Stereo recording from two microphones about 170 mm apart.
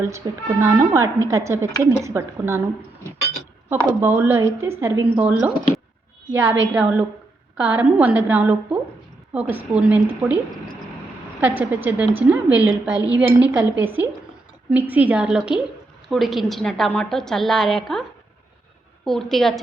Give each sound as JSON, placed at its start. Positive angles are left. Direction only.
{"t": 0.0, "sound": "a woman's voice", "side_deg": -15}
{"t": 4.0, "sound": "a woman's voice", "side_deg": -15}
{"t": 19.0, "sound": "a woman's voice", "side_deg": 0}